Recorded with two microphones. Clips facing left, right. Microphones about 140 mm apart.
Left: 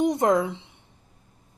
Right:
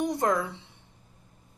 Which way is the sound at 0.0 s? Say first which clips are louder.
Left 5 dB; 20° left (ahead or behind).